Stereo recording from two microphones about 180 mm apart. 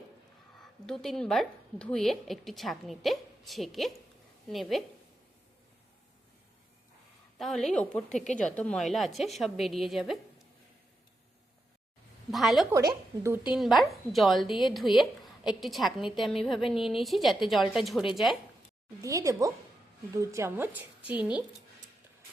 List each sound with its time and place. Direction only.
0.6 s a woman's voice: centre (ahead or behind)
7.3 s a woman's voice: centre (ahead or behind)
12.3 s a woman's voice: centre (ahead or behind)
12.7 s speech: 15° right (ahead or behind)
13.5 s a woman's voice: centre (ahead or behind)
19.0 s speech: 20° right (ahead or behind)